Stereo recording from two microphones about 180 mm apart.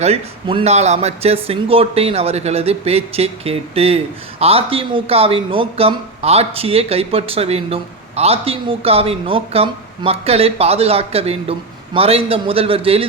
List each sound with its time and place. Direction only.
0.0 s a man's voice: 30° right (ahead or behind)